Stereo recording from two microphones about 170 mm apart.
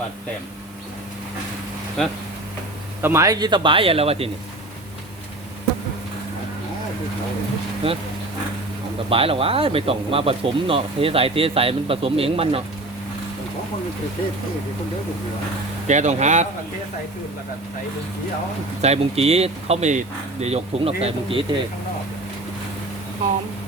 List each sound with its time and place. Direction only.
2.0 s speech: 5° left (ahead or behind)
3.0 s speech: 15° right (ahead or behind); by 4.3 s 35° right (ahead or behind)
7.8 s speech: 35° right (ahead or behind)
9.0 s speech: 35° right (ahead or behind)
15.9 s speech: 45° right (ahead or behind)
18.8 s speech: 40° right (ahead or behind)